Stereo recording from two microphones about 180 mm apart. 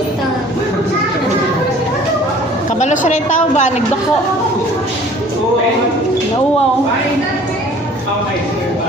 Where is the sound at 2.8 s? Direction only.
40° left (ahead or behind).